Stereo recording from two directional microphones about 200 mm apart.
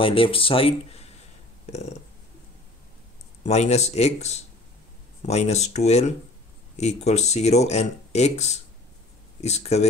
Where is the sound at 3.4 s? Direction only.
35° left (ahead or behind).